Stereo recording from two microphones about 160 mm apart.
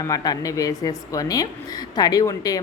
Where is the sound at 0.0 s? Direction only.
20° left (ahead or behind).